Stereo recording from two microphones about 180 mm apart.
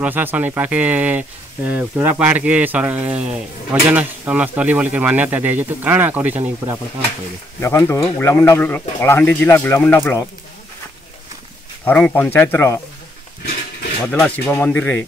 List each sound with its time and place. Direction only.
0.0 s speech: 10° right (ahead or behind)
7.6 s speech: 15° left (ahead or behind)
11.8 s speech: 10° left (ahead or behind)
14.0 s speech: 10° left (ahead or behind)